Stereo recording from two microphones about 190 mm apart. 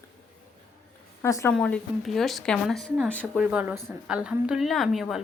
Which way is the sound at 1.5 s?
5° left (ahead or behind).